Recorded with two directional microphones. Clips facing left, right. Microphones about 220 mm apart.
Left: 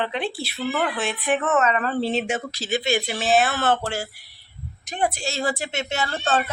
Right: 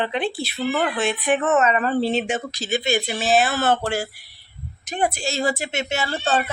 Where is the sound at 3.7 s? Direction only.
15° right (ahead or behind).